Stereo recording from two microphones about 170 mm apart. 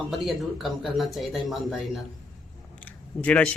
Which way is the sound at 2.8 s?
10° left (ahead or behind).